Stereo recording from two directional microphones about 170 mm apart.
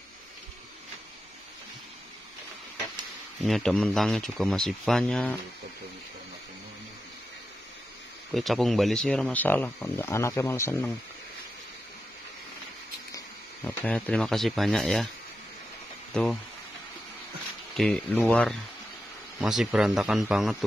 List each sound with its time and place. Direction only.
3.3 s speech: centre (ahead or behind)
8.3 s speech: centre (ahead or behind)
13.7 s speech: 10° left (ahead or behind)
16.1 s speech: 5° left (ahead or behind)
17.7 s speech: 5° left (ahead or behind)